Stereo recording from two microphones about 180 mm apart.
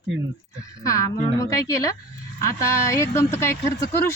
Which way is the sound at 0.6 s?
20° left (ahead or behind).